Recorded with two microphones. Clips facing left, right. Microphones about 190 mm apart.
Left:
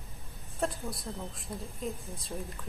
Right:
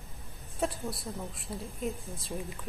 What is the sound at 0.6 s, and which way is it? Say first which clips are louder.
Speech: right 1 dB; centre (ahead or behind).